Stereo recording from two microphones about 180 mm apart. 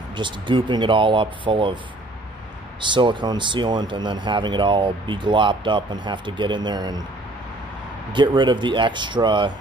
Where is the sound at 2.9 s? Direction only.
25° right (ahead or behind).